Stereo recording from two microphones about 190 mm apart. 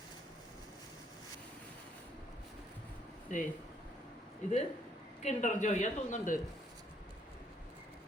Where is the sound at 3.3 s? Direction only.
40° left (ahead or behind).